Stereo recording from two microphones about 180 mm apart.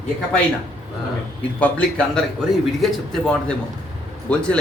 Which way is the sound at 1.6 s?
5° left (ahead or behind).